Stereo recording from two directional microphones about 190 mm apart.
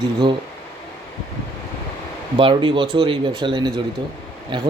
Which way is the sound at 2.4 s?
25° right (ahead or behind).